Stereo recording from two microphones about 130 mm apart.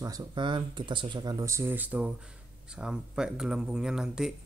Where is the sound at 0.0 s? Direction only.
30° right (ahead or behind).